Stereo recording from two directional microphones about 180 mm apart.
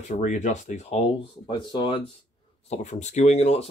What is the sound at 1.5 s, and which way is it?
Speech, 25° left (ahead or behind).